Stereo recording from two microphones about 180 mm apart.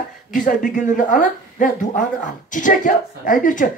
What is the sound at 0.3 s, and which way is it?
A woman's voice, 50° left (ahead or behind).